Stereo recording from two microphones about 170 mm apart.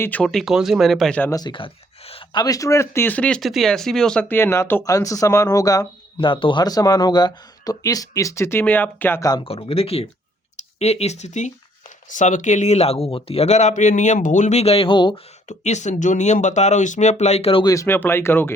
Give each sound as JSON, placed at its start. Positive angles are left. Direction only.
{"t": 0.0, "sound": "speech", "side_deg": 10}
{"t": 1.3, "sound": "a sound", "side_deg": 25}
{"t": 2.4, "sound": "speech", "side_deg": 20}
{"t": 9.3, "sound": "a man's voice", "side_deg": 30}
{"t": 15.4, "sound": "speech", "side_deg": 45}
{"t": 17.7, "sound": "speech", "side_deg": 15}